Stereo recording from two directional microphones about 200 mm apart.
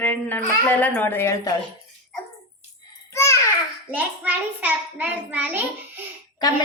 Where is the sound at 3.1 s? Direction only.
15° left (ahead or behind).